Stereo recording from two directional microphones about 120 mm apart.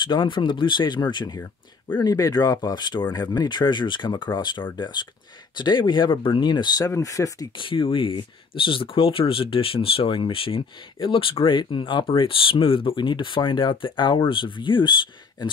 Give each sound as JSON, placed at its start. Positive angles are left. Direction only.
{"t": 0.0, "sound": "speech", "side_deg": 40}
{"t": 7.5, "sound": "speech", "side_deg": 45}